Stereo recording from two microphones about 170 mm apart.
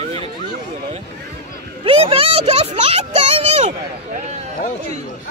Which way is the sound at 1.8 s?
35° right (ahead or behind).